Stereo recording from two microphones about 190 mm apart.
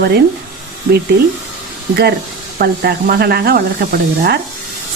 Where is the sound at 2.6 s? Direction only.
55° right (ahead or behind).